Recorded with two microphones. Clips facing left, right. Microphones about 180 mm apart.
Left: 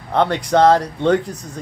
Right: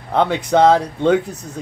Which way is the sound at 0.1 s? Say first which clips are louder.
Even; 5° right (ahead or behind).